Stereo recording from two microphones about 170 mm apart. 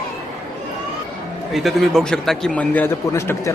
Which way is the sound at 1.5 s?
Centre (ahead or behind).